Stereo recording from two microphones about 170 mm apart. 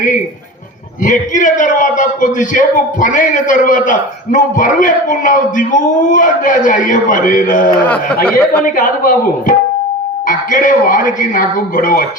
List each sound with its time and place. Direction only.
1.0 s a man's voice: 50° left (ahead or behind)
8.3 s speech: 5° left (ahead or behind)
8.6 s a man's voice: 55° left (ahead or behind)